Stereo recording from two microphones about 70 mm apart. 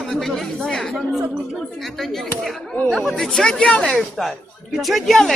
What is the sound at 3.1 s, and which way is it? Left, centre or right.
Speech, centre.